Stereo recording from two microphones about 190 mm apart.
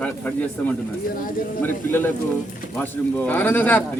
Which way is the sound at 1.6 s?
10° left (ahead or behind).